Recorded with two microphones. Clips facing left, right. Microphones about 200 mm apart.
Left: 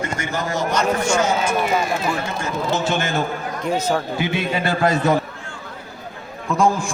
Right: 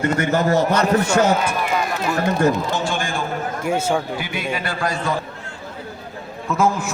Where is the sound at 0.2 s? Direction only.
60° right (ahead or behind).